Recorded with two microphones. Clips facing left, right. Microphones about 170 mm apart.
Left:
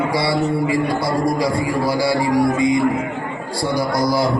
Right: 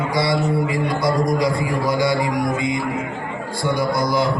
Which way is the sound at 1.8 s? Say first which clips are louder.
Even; 35° left (ahead or behind).